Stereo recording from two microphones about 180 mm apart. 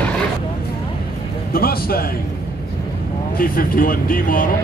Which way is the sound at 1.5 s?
55° left (ahead or behind).